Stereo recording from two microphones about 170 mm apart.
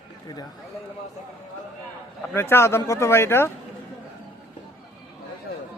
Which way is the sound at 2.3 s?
15° left (ahead or behind).